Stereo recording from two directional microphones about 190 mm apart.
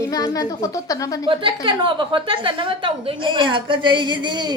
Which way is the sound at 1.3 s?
25° right (ahead or behind).